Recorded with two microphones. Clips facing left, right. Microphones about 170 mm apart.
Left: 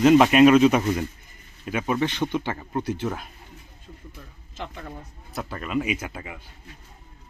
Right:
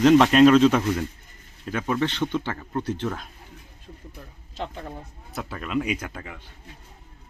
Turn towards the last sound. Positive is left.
turn(degrees=10)  # may be behind; listen again after turning